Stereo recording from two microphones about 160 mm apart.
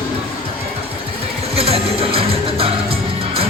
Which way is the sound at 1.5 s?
40° right (ahead or behind).